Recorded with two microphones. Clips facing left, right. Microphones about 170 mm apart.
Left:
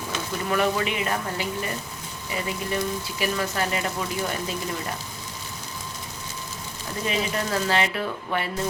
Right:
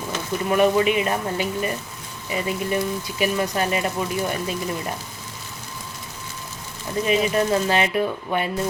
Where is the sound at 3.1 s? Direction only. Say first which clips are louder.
Right 5 dB; 20° right (ahead or behind).